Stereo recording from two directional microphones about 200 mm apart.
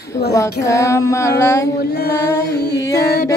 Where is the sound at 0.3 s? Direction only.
15° left (ahead or behind).